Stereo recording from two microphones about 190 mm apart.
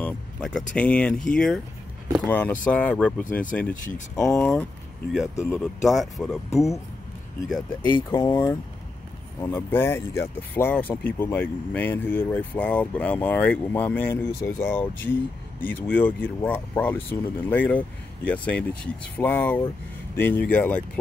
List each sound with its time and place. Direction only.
0.0 s speech: 5° left (ahead or behind)
4.4 s speech: 5° left (ahead or behind)
7.5 s speech: 20° left (ahead or behind)